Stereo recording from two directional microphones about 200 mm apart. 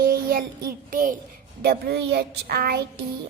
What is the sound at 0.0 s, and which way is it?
Child singing, 45° right (ahead or behind).